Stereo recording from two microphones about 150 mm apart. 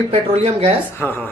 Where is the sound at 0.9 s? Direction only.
15° left (ahead or behind).